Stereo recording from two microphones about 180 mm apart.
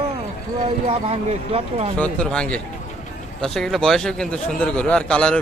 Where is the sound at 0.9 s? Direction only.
35° right (ahead or behind).